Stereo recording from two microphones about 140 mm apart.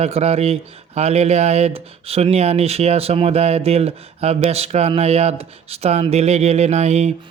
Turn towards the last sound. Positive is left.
turn(degrees=-55)  # may be behind; listen again after turning